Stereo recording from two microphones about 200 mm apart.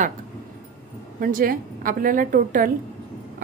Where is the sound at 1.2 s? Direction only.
45° right (ahead or behind).